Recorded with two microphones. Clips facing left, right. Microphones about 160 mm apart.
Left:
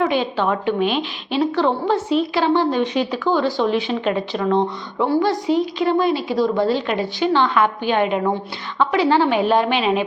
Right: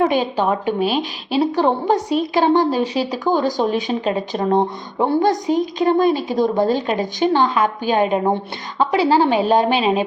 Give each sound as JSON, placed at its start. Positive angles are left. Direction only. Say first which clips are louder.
{"t": 0.0, "sound": "speech", "louder": "right 2 dB", "side_deg": -40}
{"t": 1.5, "sound": "a woman's voice", "louder": "right 1 dB", "side_deg": -15}
{"t": 2.0, "sound": "a woman's voice", "louder": "right 1 dB", "side_deg": -45}